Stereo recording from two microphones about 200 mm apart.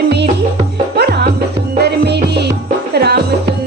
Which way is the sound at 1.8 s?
55° right (ahead or behind).